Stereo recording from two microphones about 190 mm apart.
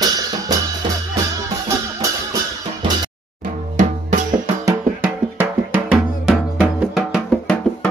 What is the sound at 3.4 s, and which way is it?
Drum, 40° right (ahead or behind).